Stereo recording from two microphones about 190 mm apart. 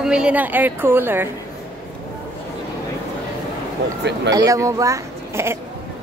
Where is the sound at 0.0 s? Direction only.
5° right (ahead or behind).